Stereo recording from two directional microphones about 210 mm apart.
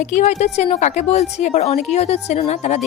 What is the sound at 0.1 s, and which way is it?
A woman's voice, 35° left (ahead or behind).